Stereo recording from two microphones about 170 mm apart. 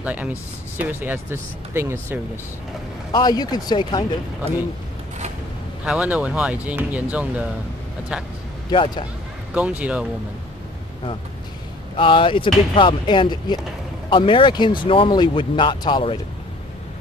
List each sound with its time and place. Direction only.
0.0 s speech: 10° right (ahead or behind)
3.1 s speech: 25° left (ahead or behind)
5.9 s speech: 5° right (ahead or behind)
8.6 s speech: 25° left (ahead or behind)
9.5 s speech: 10° right (ahead or behind)
12.0 s speech: 30° left (ahead or behind)